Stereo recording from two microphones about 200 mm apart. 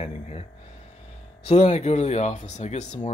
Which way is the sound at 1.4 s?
35° left (ahead or behind).